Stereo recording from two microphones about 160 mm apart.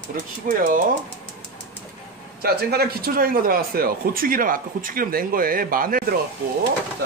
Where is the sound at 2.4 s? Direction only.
75° right (ahead or behind).